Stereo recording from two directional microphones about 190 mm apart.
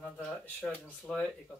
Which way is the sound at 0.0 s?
5° left (ahead or behind).